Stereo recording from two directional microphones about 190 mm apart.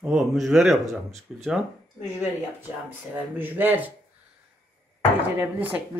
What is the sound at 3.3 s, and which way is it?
Speech, 10° right (ahead or behind).